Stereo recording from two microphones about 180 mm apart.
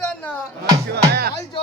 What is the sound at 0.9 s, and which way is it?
Music, 60° right (ahead or behind).